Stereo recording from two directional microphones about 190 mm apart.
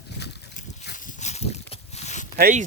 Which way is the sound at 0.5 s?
40° left (ahead or behind).